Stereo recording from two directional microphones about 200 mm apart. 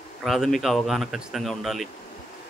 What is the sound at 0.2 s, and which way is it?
Speech, centre (ahead or behind).